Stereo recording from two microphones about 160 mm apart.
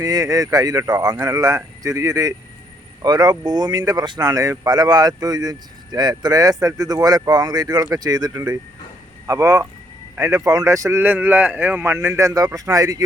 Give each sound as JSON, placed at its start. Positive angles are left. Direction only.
{"t": 0.0, "sound": "speech", "side_deg": -20}